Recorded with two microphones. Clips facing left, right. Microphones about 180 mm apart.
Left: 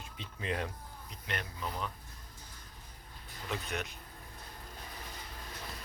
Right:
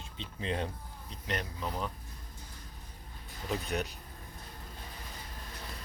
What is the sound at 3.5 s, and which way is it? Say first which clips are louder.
Speech: right 4 dB; 35° right (ahead or behind).